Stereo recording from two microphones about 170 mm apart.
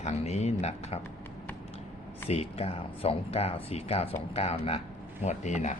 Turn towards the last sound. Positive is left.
turn(degrees=45)  # may be behind; listen again after turning